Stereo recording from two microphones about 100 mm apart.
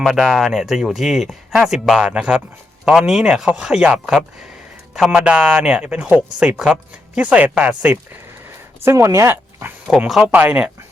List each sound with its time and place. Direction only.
0.0 s speech: 5° right (ahead or behind)
8.8 s speech: 30° right (ahead or behind)
9.3 s speech: 20° right (ahead or behind)